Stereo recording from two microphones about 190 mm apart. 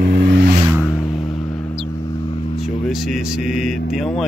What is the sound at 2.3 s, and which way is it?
Vehicle, 30° left (ahead or behind).